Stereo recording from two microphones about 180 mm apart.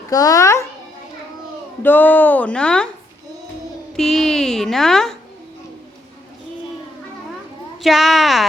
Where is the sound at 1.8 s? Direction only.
10° left (ahead or behind).